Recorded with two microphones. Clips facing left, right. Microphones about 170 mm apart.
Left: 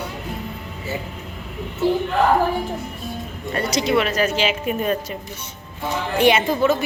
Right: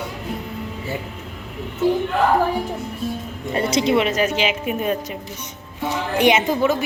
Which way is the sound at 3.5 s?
25° right (ahead or behind).